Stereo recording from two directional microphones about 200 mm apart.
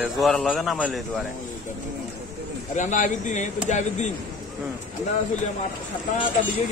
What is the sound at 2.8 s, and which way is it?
Speech, 35° left (ahead or behind).